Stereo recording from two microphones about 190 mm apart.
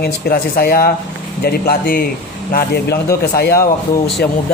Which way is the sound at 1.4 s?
55° left (ahead or behind).